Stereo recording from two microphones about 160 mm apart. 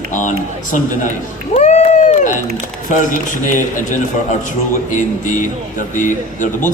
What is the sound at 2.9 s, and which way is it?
A man's voice, 55° left (ahead or behind).